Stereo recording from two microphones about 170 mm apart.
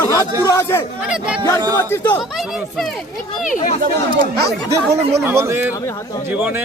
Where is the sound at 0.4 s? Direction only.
15° left (ahead or behind).